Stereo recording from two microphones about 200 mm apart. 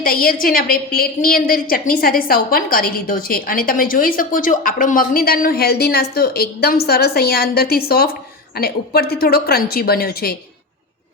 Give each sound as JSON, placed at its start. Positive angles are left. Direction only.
{"t": 0.0, "sound": "a woman's voice", "side_deg": 45}